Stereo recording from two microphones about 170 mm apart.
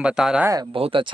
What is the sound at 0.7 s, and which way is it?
Speech, 30° right (ahead or behind).